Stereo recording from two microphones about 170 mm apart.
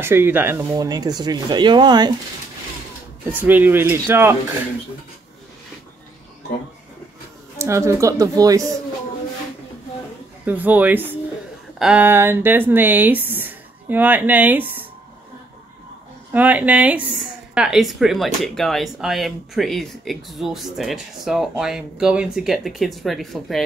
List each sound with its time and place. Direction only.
0.0 s speech: 15° right (ahead or behind)
3.3 s speech: 10° right (ahead or behind)
7.5 s speech: 15° right (ahead or behind)
10.4 s speech: 10° right (ahead or behind)
16.3 s speech: 10° right (ahead or behind)